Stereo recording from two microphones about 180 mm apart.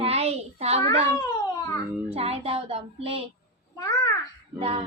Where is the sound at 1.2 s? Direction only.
20° left (ahead or behind).